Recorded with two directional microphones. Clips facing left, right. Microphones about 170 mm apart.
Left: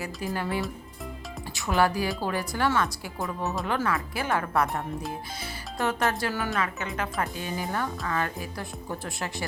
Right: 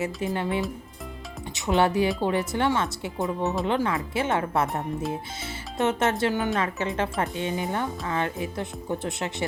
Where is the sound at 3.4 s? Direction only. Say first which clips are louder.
Right 3 dB; centre (ahead or behind).